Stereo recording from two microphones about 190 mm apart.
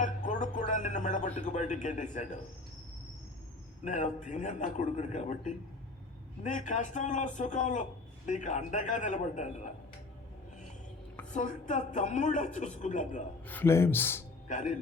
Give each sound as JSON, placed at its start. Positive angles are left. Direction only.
{"t": 0.0, "sound": "a sound", "side_deg": 40}
{"t": 3.8, "sound": "a man's voice", "side_deg": 40}
{"t": 11.3, "sound": "a man's voice", "side_deg": 40}
{"t": 13.5, "sound": "speech", "side_deg": 10}
{"t": 14.4, "sound": "speech", "side_deg": 40}